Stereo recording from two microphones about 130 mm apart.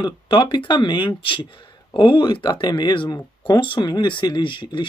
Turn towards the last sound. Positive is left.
turn(degrees=35)  # may be behind; listen again after turning